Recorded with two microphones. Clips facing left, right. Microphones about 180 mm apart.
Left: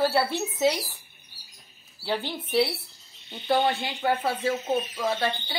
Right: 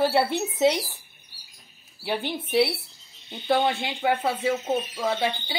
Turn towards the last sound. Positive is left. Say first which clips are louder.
# right 1 dB
turn(degrees=-10)  # may be behind; listen again after turning